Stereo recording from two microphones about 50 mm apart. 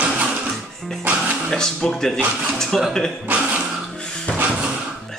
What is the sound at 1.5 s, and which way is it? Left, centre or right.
Speech, centre.